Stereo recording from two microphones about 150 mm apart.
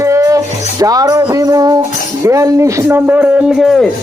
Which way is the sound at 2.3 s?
20° right (ahead or behind).